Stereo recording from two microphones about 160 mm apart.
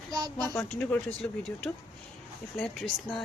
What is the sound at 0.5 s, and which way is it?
Speech, 5° left (ahead or behind).